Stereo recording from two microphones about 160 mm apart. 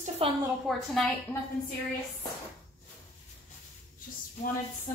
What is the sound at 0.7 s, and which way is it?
Speech, centre (ahead or behind).